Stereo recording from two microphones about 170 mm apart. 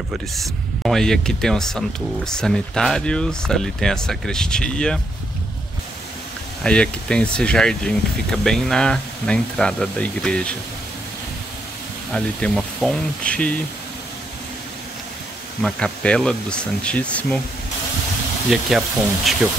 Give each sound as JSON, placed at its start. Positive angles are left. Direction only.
{"t": 0.1, "sound": "speech", "side_deg": 0}
{"t": 6.6, "sound": "speech", "side_deg": 5}
{"t": 12.1, "sound": "speech", "side_deg": 5}
{"t": 15.6, "sound": "speech", "side_deg": 5}
{"t": 18.5, "sound": "speech", "side_deg": 0}